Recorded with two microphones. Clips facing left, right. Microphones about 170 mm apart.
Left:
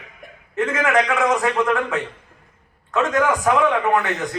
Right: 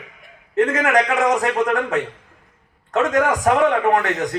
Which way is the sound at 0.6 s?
35° right (ahead or behind).